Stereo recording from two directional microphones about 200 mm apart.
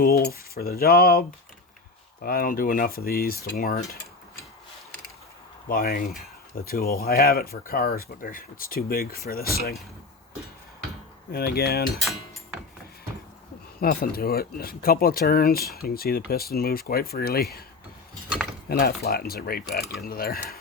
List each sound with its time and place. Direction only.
0.0 s speech: 50° left (ahead or behind)
2.2 s speech: 45° left (ahead or behind)
5.6 s speech: 45° left (ahead or behind)
11.3 s speech: 50° left (ahead or behind)
13.7 s speech: 50° left (ahead or behind)
18.7 s speech: 50° left (ahead or behind)